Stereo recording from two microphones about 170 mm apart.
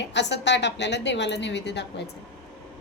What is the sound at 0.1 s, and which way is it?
A woman's voice, 90° left.